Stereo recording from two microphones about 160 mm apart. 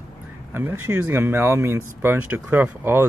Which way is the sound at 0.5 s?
10° right (ahead or behind).